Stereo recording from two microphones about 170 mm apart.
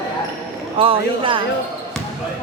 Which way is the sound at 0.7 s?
30° right (ahead or behind).